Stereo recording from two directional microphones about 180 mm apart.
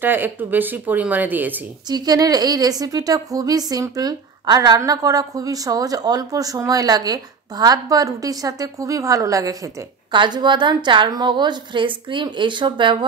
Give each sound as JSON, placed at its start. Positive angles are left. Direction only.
{"t": 0.0, "sound": "speech", "side_deg": -10}
{"t": 1.9, "sound": "a woman's voice", "side_deg": -20}